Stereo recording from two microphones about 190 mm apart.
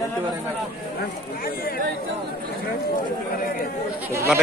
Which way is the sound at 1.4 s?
50° left (ahead or behind).